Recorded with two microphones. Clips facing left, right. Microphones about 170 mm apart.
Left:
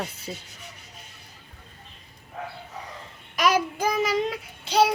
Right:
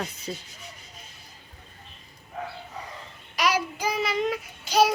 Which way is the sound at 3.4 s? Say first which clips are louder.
Left 3 dB; 50° left (ahead or behind).